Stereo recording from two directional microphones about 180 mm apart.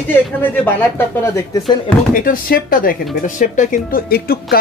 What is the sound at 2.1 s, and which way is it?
Speech, 50° left (ahead or behind).